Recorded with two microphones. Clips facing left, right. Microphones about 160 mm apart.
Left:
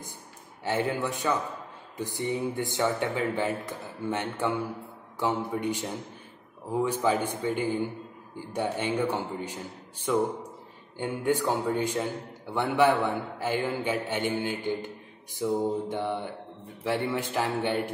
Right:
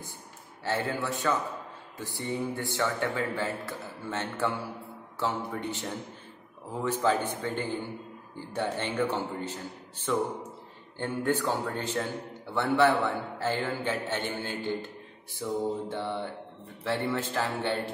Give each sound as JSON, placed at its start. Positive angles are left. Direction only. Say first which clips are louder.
{"t": 0.7, "sound": "speech", "louder": "left 2 dB", "side_deg": 15}